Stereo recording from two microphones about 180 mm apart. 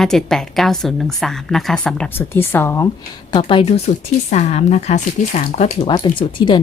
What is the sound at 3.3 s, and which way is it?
A woman's voice, 25° left (ahead or behind).